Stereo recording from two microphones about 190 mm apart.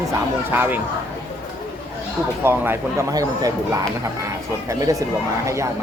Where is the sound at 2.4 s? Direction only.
10° right (ahead or behind).